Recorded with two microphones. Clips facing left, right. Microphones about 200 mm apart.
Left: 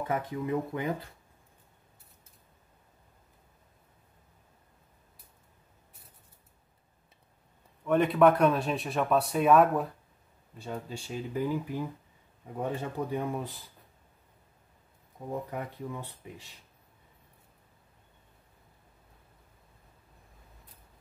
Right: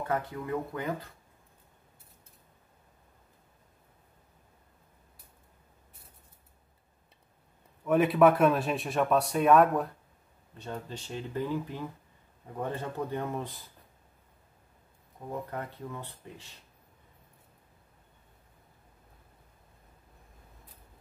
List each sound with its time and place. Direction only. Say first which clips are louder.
0.0 s speech: left 1 dB; 15° left (ahead or behind)
7.8 s speech: even; 5° right (ahead or behind)
15.5 s speech: left 1 dB; 15° left (ahead or behind)